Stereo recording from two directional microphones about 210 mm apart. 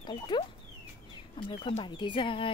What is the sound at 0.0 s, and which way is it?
Speech, 20° left (ahead or behind).